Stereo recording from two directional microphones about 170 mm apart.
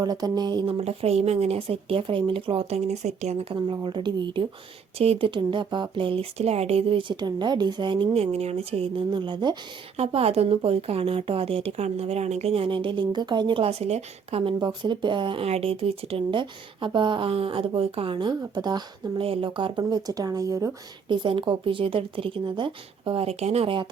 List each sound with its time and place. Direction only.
0.0 s speech: 20° right (ahead or behind)